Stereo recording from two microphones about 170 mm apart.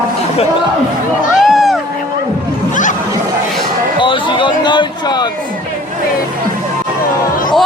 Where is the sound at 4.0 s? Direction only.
30° left (ahead or behind).